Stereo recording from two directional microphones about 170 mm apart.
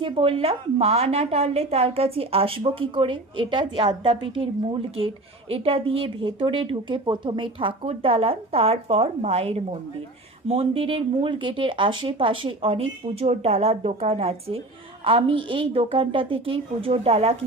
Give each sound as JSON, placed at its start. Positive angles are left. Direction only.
{"t": 0.0, "sound": "a woman's voice", "side_deg": -35}